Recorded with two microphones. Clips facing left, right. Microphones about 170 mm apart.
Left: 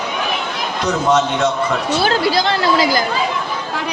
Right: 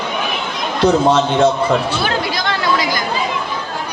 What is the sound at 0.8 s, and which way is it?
Speech, 30° right (ahead or behind).